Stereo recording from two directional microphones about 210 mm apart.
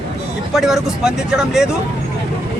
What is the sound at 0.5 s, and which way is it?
Speech, centre (ahead or behind).